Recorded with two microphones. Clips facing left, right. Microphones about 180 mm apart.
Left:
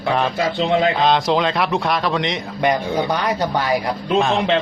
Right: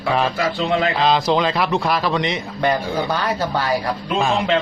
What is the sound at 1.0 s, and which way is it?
Speech, centre (ahead or behind).